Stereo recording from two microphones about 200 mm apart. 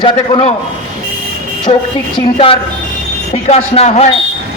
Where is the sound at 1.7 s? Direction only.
30° left (ahead or behind).